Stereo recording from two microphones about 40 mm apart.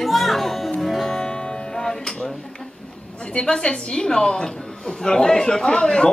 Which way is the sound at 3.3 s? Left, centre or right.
Centre.